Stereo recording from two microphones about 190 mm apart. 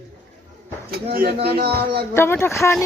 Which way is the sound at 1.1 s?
55° right (ahead or behind).